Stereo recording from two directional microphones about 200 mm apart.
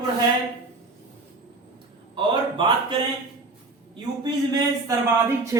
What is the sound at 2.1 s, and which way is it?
Speech, 25° right (ahead or behind).